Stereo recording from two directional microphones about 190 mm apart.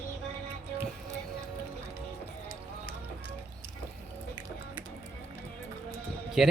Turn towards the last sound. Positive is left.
turn(degrees=0)  # may be behind; listen again after turning